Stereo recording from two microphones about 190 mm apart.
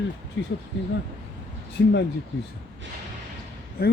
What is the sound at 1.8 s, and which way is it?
Speech, 70° left (ahead or behind).